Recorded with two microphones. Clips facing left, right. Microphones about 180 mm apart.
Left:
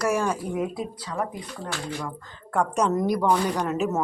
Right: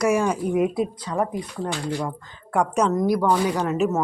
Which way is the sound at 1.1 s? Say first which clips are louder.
Right 3 dB; 35° right (ahead or behind).